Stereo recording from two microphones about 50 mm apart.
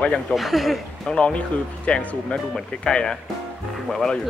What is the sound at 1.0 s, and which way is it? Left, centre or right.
Speech, centre.